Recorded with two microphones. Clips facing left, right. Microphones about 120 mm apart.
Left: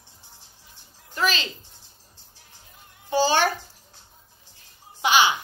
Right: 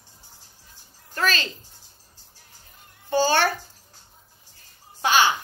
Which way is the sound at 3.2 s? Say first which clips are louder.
Even; 15° left (ahead or behind).